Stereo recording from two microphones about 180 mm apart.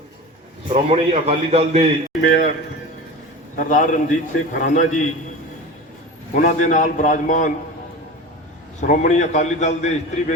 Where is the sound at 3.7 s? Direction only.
45° left (ahead or behind).